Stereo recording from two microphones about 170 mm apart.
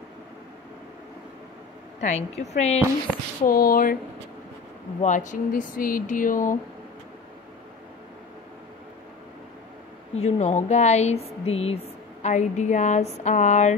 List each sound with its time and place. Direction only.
2.0 s speech: 45° left (ahead or behind)
3.4 s speech: 60° left (ahead or behind)
5.0 s speech: 45° left (ahead or behind)
10.1 s speech: 40° left (ahead or behind)